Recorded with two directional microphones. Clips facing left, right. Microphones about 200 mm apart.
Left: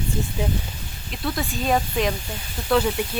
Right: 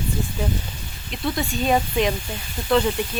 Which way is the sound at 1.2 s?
Centre (ahead or behind).